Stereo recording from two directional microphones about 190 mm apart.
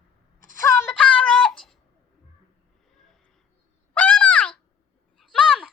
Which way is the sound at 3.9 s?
5° left (ahead or behind).